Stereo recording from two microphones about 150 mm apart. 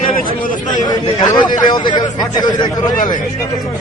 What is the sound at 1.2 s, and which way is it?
A man's voice, 25° left (ahead or behind).